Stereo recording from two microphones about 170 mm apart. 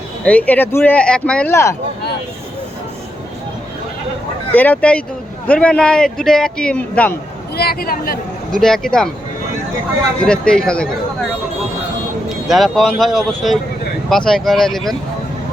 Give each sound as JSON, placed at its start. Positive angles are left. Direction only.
{"t": 0.3, "sound": "speech", "side_deg": 10}
{"t": 4.5, "sound": "speech", "side_deg": 10}
{"t": 7.5, "sound": "a woman's voice", "side_deg": 65}
{"t": 8.5, "sound": "speech", "side_deg": 5}
{"t": 10.2, "sound": "speech", "side_deg": 5}
{"t": 12.5, "sound": "speech", "side_deg": 0}